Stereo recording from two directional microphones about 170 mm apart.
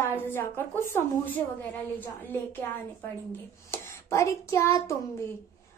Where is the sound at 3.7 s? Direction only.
15° left (ahead or behind).